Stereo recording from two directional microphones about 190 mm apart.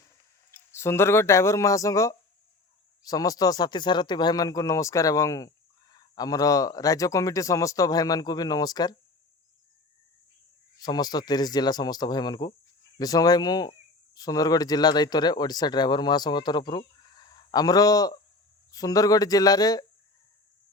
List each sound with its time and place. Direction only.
0.7 s speech: 15° left (ahead or behind)
10.8 s speech: 20° left (ahead or behind)